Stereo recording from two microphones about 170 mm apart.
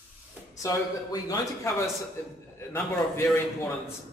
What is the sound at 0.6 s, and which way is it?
Speech, 20° left (ahead or behind).